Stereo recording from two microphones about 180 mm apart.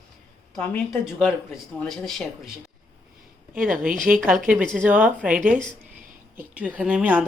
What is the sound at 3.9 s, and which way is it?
Speech, 45° right (ahead or behind).